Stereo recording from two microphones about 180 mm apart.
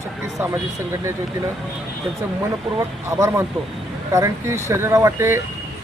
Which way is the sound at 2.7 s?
15° right (ahead or behind).